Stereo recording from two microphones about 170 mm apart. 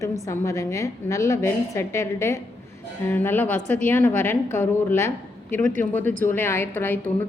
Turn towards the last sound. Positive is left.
turn(degrees=10)  # may be behind; listen again after turning